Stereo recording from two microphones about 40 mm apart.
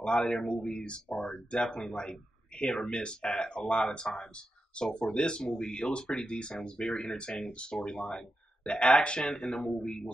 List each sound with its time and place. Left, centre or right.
0.0 s speech: left